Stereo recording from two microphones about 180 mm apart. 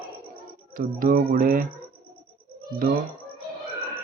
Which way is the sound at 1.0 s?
50° right (ahead or behind).